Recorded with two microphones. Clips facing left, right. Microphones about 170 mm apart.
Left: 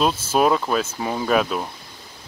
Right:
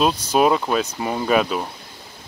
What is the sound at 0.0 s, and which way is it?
Speech, 5° left (ahead or behind).